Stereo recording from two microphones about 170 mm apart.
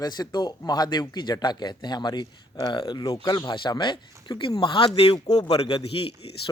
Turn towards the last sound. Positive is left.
turn(degrees=35)  # may be behind; listen again after turning